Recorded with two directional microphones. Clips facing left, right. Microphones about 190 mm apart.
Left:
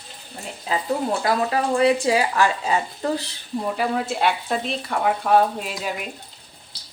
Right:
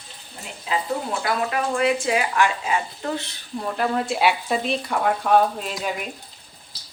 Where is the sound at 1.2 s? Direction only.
30° left (ahead or behind).